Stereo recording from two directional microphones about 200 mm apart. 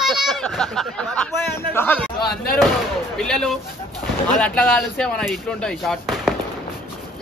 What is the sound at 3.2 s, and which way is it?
Speech, 5° left (ahead or behind).